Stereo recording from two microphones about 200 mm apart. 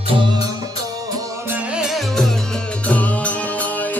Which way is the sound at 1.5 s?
5° right (ahead or behind).